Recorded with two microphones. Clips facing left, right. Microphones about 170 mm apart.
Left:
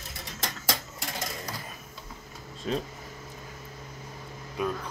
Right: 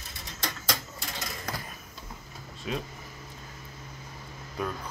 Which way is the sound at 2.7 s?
40° left (ahead or behind).